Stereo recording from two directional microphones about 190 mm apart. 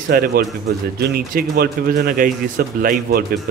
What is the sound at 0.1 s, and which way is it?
A man's voice, 50° right (ahead or behind).